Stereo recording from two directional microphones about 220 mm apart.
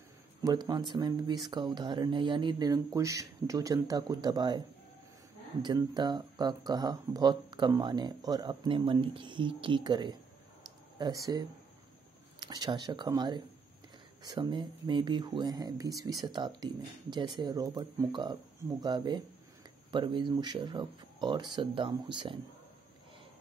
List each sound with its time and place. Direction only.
0.4 s speech: 15° right (ahead or behind)